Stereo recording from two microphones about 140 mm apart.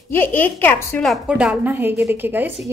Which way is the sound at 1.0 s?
Centre (ahead or behind).